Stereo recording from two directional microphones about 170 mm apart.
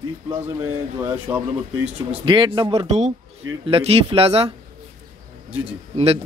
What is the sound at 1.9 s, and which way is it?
Speech, 30° right (ahead or behind).